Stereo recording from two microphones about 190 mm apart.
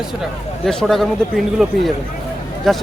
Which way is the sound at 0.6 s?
Centre (ahead or behind).